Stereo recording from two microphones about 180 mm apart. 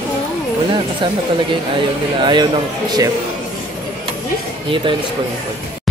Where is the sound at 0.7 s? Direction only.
25° right (ahead or behind).